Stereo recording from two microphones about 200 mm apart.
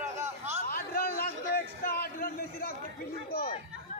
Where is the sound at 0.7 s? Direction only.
50° left (ahead or behind).